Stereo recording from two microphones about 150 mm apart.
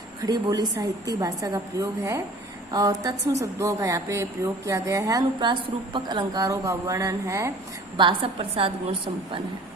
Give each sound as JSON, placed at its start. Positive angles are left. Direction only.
{"t": 0.2, "sound": "a woman's voice", "side_deg": -30}
{"t": 7.9, "sound": "a woman's voice", "side_deg": -35}